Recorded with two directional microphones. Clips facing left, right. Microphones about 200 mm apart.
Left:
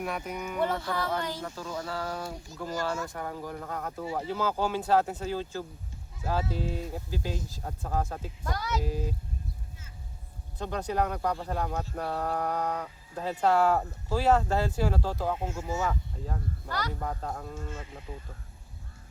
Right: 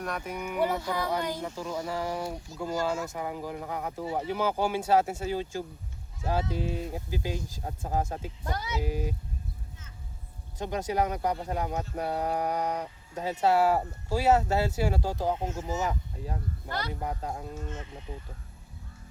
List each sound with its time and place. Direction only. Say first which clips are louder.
0.0 s speech: even; 5° left (ahead or behind); by 4.0 s 10° right (ahead or behind)
4.0 s speech: right 2 dB; 30° right (ahead or behind)
4.3 s speech: right 1 dB; 15° right (ahead or behind)
10.6 s speech: right 1 dB; 15° right (ahead or behind)